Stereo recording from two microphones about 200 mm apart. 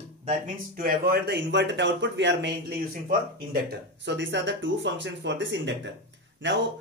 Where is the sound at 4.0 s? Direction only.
60° right (ahead or behind).